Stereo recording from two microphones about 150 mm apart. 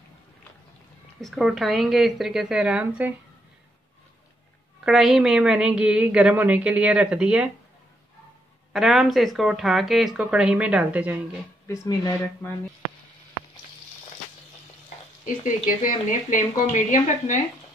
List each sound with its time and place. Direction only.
1.2 s speech: centre (ahead or behind)
4.8 s a woman's voice: centre (ahead or behind)
8.7 s speech: centre (ahead or behind)
11.6 s speech: 20° left (ahead or behind)
15.2 s speech: 60° left (ahead or behind)